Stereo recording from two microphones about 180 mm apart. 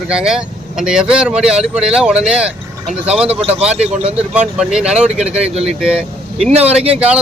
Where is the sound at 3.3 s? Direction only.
35° right (ahead or behind).